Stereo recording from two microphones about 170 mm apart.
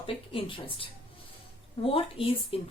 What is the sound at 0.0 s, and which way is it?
A woman's voice, 30° left (ahead or behind).